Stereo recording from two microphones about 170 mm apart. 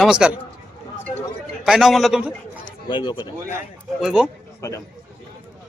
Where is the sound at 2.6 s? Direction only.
25° left (ahead or behind).